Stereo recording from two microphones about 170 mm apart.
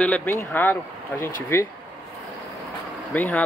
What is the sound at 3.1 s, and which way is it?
Speech, 10° left (ahead or behind).